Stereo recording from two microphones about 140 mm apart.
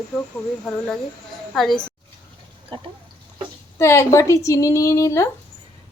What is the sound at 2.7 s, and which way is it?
Speech, 35° right (ahead or behind).